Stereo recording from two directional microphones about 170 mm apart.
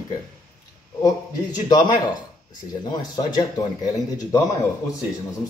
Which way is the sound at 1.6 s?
25° left (ahead or behind).